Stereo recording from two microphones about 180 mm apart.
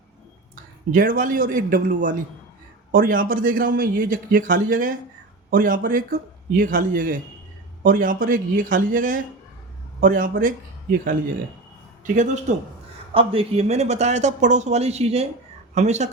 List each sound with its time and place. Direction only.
0.5 s a man's voice: 50° right (ahead or behind)
12.0 s a man's voice: 45° right (ahead or behind)
13.1 s speech: 30° right (ahead or behind)